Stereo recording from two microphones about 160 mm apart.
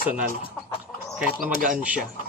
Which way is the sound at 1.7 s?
10° right (ahead or behind).